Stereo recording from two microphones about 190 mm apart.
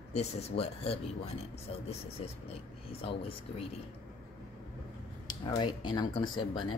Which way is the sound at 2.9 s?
30° left (ahead or behind).